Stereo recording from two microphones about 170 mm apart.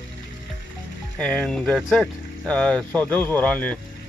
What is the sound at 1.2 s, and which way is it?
Speech, 5° left (ahead or behind).